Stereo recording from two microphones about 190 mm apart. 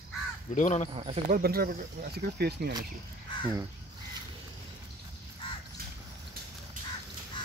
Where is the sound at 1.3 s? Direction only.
50° right (ahead or behind).